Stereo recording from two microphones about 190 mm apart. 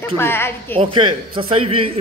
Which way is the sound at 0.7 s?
25° right (ahead or behind).